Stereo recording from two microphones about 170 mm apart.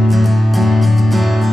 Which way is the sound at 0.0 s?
Centre (ahead or behind).